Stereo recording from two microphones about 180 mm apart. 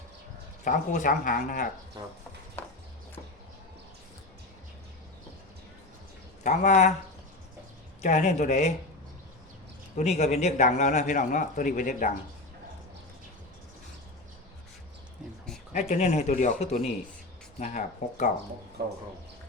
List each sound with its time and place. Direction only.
0.6 s a man's voice: 45° left (ahead or behind)
6.4 s speech: 45° left (ahead or behind)
8.0 s speech: 40° left (ahead or behind)
10.0 s a man's voice: 40° left (ahead or behind)
15.7 s a man's voice: 40° left (ahead or behind)
18.8 s speech: 60° right (ahead or behind)